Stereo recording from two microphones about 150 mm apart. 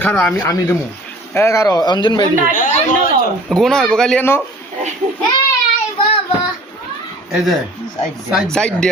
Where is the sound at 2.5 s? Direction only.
65° left (ahead or behind).